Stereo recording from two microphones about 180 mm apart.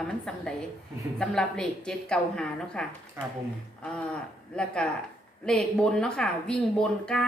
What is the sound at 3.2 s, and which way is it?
Speech, 15° right (ahead or behind).